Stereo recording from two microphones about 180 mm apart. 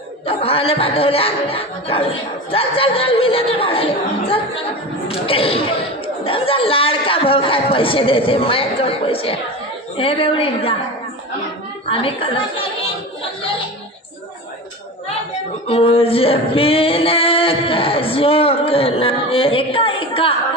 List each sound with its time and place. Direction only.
0.3 s singing: 30° left (ahead or behind)
5.0 s singing: 30° left (ahead or behind)
11.9 s singing: 30° left (ahead or behind)
15.6 s singing: 30° left (ahead or behind)